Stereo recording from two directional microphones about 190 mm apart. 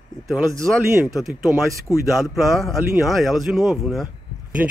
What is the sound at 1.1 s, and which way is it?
Speech, centre (ahead or behind).